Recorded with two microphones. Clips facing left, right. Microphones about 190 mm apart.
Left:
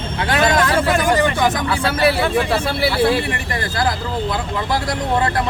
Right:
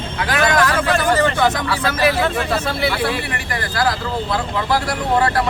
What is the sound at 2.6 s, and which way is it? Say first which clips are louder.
Speech: left 3 dB; 30° left (ahead or behind).